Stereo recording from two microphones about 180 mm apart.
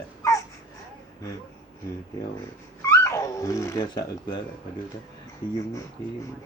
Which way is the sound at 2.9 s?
15° left (ahead or behind).